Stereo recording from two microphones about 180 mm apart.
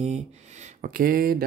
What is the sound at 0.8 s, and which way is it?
Speech, 50° right (ahead or behind).